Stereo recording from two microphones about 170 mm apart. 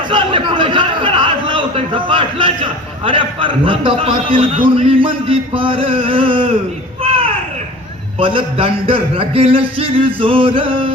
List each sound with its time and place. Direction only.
0.1 s a man's voice: 30° right (ahead or behind)
7.0 s a sound: 35° right (ahead or behind)
8.2 s a man's voice: 30° right (ahead or behind)